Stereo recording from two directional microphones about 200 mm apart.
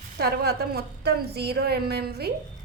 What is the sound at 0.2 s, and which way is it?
A woman's voice, 50° right (ahead or behind).